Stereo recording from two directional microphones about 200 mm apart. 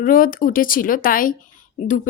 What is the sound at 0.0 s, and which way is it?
A woman's voice, 45° left (ahead or behind).